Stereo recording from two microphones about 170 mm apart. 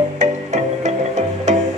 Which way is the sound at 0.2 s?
45° right (ahead or behind).